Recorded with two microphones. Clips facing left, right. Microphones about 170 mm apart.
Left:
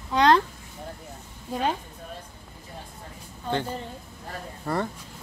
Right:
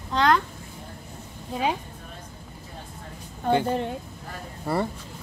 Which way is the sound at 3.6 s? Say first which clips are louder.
Right 8 dB; 65° right (ahead or behind).